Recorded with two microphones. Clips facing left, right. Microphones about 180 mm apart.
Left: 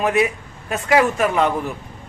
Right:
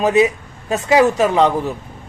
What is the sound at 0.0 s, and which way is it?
A man's voice, 20° right (ahead or behind).